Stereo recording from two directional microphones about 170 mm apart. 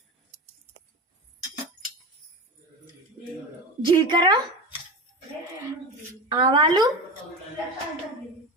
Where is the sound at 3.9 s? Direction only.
25° right (ahead or behind).